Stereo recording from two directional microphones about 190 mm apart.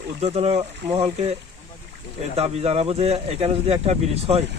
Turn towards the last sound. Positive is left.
turn(degrees=-35)  # may be behind; listen again after turning